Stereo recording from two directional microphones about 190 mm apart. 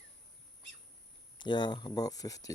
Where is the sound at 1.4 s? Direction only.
25° left (ahead or behind).